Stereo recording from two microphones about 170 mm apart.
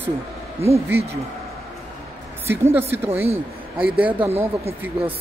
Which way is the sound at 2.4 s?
15° right (ahead or behind).